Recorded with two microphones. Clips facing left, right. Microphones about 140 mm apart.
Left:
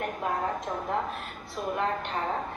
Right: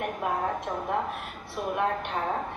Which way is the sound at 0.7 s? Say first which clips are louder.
Right 1 dB; 10° right (ahead or behind).